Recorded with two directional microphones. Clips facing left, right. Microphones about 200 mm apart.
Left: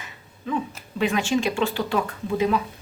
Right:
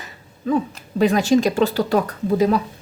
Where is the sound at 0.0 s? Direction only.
40° right (ahead or behind).